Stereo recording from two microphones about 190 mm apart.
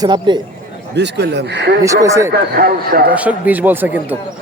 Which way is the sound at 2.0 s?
15° right (ahead or behind).